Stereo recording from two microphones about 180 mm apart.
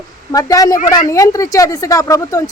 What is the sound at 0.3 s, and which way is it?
A woman's voice, 20° left (ahead or behind).